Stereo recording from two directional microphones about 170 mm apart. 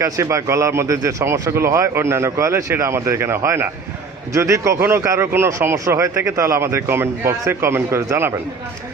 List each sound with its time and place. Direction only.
0.0 s speech: 15° right (ahead or behind)